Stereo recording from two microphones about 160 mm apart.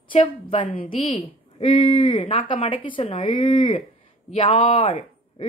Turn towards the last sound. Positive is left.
turn(degrees=35)  # may be behind; listen again after turning